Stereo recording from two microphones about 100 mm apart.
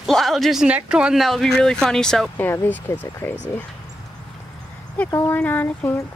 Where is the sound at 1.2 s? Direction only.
5° left (ahead or behind).